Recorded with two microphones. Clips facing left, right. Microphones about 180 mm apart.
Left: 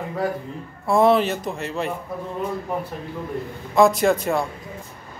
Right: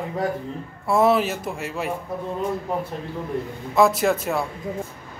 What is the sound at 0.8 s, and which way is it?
A man's voice, 5° right (ahead or behind).